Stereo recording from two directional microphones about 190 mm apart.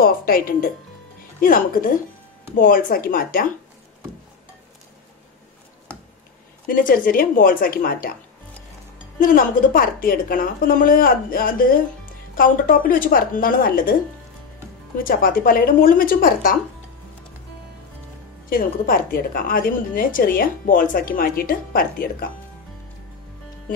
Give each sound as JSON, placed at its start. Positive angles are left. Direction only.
{"t": 0.0, "sound": "a woman's voice", "side_deg": 50}
{"t": 6.7, "sound": "a woman's voice", "side_deg": 45}
{"t": 9.2, "sound": "a woman's voice", "side_deg": 45}
{"t": 15.0, "sound": "a woman's voice", "side_deg": 50}
{"t": 18.5, "sound": "a woman's voice", "side_deg": 50}